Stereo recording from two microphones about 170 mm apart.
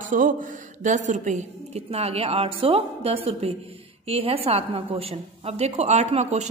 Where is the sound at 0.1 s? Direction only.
50° right (ahead or behind).